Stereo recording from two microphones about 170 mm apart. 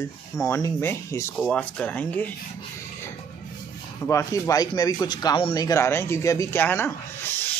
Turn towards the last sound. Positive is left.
turn(degrees=15)  # may be behind; listen again after turning